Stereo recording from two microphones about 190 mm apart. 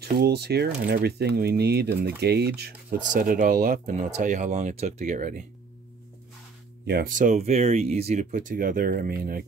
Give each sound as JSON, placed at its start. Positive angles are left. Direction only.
{"t": 0.0, "sound": "speech", "side_deg": -55}
{"t": 3.1, "sound": "speech", "side_deg": -45}
{"t": 6.9, "sound": "speech", "side_deg": -50}